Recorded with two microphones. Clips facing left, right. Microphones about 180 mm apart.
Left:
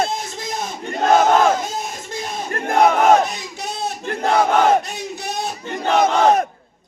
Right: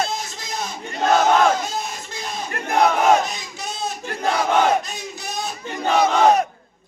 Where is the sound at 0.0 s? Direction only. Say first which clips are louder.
Left 3 dB; 55° left (ahead or behind).